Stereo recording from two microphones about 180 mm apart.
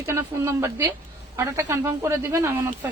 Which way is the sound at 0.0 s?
15° right (ahead or behind).